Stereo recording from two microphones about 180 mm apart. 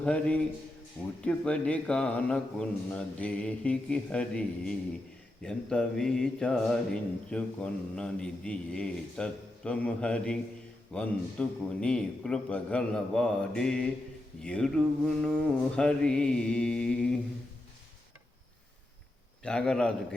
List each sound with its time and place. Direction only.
0.0 s a man's voice: 5° left (ahead or behind)
19.4 s speech: 5° left (ahead or behind)